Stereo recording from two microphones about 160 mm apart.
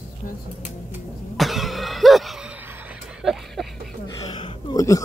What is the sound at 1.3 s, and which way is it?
Cough, centre (ahead or behind).